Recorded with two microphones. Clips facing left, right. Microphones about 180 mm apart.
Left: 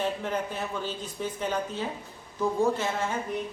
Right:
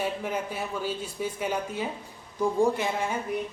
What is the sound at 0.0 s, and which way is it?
A man's voice, 10° right (ahead or behind).